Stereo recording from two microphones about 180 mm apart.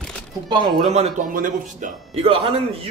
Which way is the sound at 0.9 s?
45° right (ahead or behind).